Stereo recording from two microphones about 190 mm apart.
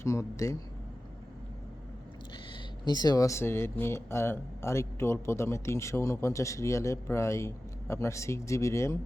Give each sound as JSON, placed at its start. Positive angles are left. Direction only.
{"t": 0.0, "sound": "speech", "side_deg": 15}
{"t": 2.3, "sound": "speech", "side_deg": 25}